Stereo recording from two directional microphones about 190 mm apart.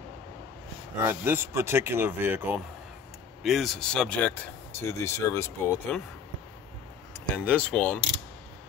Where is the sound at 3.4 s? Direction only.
Centre (ahead or behind).